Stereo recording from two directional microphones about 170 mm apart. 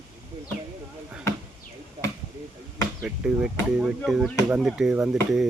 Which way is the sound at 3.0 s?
5° right (ahead or behind).